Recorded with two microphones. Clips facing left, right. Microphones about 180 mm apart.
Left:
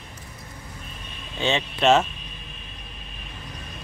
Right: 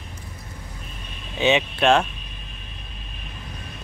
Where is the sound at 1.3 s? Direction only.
15° right (ahead or behind).